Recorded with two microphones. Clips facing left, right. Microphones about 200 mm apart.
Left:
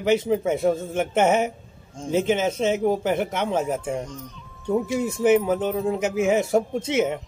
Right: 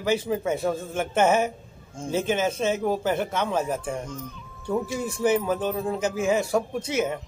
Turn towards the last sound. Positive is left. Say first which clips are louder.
# left 3 dB
turn(degrees=20)  # may be behind; listen again after turning